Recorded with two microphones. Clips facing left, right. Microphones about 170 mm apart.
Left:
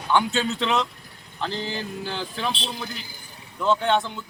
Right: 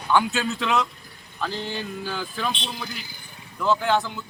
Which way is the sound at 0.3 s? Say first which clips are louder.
Even; 20° left (ahead or behind).